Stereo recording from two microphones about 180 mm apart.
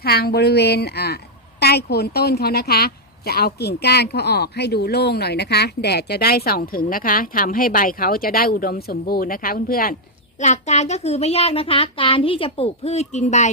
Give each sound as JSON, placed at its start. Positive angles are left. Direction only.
{"t": 0.0, "sound": "a woman's voice", "side_deg": 60}
{"t": 10.3, "sound": "a child's voice", "side_deg": 40}